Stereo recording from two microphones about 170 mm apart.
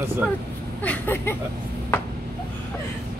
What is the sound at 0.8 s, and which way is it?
Speech, 10° left (ahead or behind).